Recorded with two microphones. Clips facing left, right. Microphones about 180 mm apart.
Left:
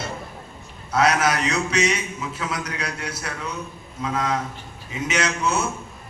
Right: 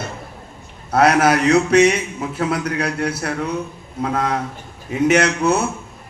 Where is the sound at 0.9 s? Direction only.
60° right (ahead or behind).